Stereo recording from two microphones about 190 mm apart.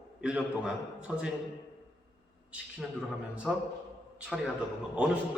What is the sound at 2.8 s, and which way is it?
Speech, centre (ahead or behind).